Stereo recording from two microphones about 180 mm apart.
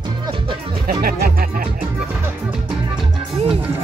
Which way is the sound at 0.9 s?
55° right (ahead or behind).